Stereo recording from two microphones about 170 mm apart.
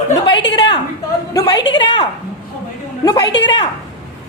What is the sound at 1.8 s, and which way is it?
Speech, 25° left (ahead or behind).